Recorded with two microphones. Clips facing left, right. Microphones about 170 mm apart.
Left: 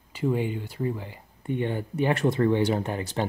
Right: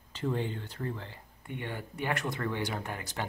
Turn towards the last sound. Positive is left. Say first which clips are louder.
# left 9 dB
turn(degrees=25)  # may be behind; listen again after turning